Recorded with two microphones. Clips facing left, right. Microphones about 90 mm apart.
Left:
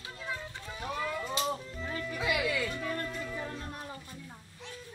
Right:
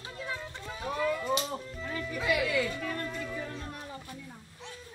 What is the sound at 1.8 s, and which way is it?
Music, 5° left (ahead or behind).